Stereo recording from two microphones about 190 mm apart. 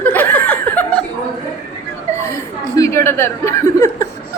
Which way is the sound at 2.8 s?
15° left (ahead or behind).